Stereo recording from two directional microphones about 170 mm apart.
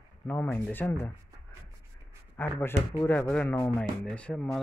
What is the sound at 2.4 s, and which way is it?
Speech, 10° left (ahead or behind).